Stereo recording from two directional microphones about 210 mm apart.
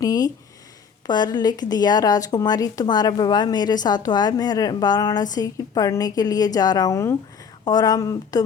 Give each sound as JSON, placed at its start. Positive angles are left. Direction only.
{"t": 0.0, "sound": "a woman's voice", "side_deg": 15}